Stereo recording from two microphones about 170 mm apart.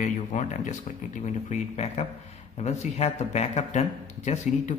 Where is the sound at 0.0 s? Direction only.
45° left (ahead or behind).